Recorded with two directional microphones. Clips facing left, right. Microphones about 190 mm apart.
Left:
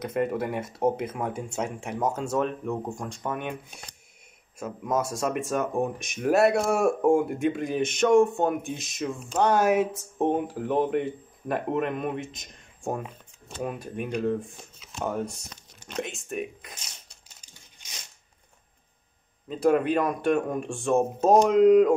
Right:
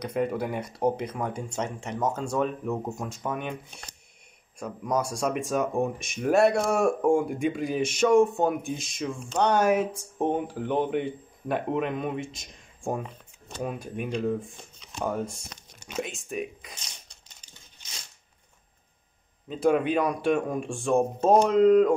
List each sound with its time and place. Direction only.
0.0 s speech: centre (ahead or behind)
17.3 s tearing: 10° left (ahead or behind)
19.4 s speech: centre (ahead or behind)